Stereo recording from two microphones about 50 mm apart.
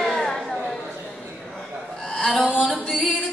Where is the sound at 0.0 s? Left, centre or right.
Centre.